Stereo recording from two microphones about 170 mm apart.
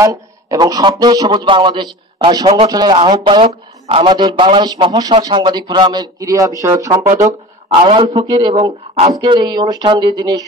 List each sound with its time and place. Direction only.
0.0 s speech: 20° right (ahead or behind)
7.8 s speech: 30° right (ahead or behind)